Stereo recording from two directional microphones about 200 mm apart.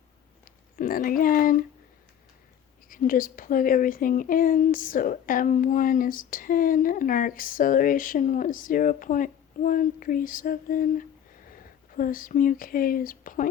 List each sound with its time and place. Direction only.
0.8 s speech: 45° left (ahead or behind)
2.9 s speech: 45° left (ahead or behind)